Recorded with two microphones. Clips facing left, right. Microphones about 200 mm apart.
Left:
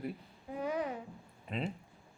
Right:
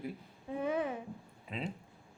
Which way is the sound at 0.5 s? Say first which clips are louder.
Right 2 dB; 25° right (ahead or behind).